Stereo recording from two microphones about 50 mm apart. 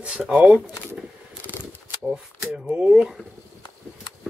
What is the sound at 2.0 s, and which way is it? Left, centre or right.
Speech, centre.